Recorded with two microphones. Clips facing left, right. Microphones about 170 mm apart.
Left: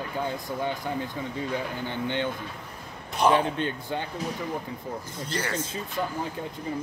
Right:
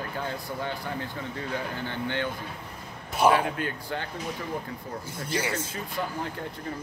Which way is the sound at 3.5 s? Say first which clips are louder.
Left 2 dB; 20° left (ahead or behind).